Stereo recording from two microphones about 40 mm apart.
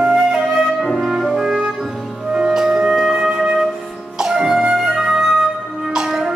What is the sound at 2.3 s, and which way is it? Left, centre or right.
Music, centre.